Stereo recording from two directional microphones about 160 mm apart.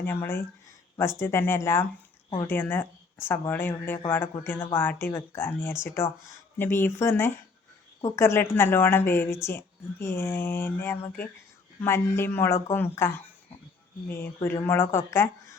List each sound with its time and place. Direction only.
0.0 s speech: 15° left (ahead or behind)
14.4 s speech: 15° left (ahead or behind)